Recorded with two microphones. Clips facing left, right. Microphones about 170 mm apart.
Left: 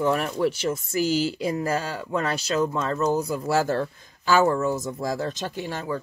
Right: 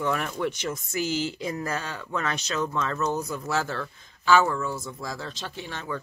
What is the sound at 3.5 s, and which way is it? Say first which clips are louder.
Speech: left 7 dB; 40° left (ahead or behind).